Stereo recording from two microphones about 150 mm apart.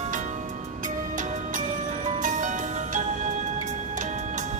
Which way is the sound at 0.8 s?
55° right (ahead or behind).